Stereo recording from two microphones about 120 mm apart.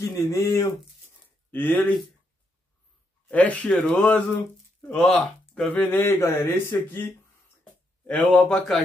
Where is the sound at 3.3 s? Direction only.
10° left (ahead or behind).